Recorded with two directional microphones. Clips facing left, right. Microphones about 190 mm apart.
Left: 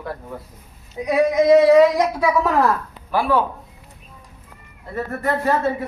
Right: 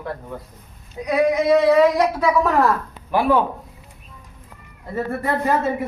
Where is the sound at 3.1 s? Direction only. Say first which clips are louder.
Right 2 dB; 15° right (ahead or behind).